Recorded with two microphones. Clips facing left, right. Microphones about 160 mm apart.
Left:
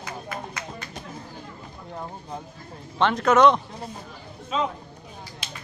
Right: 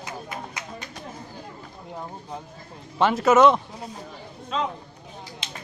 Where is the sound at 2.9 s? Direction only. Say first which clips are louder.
Right 1 dB; 5° right (ahead or behind).